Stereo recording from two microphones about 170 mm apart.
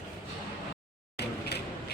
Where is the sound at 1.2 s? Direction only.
75° left (ahead or behind).